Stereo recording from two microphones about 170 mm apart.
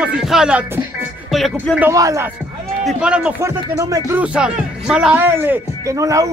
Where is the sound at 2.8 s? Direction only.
5° right (ahead or behind).